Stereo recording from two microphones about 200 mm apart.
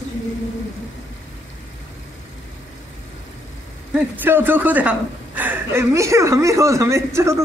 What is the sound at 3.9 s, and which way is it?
A man's voice, 10° right (ahead or behind).